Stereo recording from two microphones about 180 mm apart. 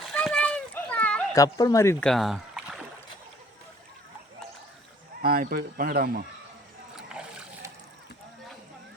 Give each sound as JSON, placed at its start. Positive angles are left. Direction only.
{"t": 0.0, "sound": "splash", "side_deg": 0}
{"t": 1.3, "sound": "speech", "side_deg": 20}
{"t": 2.0, "sound": "rowboat", "side_deg": 0}
{"t": 5.2, "sound": "speech", "side_deg": -55}
{"t": 6.9, "sound": "a sound", "side_deg": -5}